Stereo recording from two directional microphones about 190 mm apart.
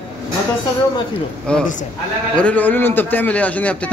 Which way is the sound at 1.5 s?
5° left (ahead or behind).